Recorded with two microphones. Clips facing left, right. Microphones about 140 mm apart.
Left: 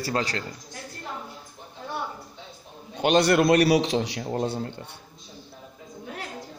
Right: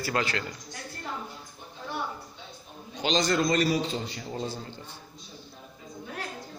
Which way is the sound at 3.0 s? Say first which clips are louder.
Left 6 dB; 60° left (ahead or behind).